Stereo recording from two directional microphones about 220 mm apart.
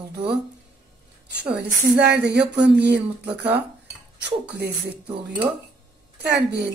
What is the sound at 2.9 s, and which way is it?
Cutlery, 5° right (ahead or behind).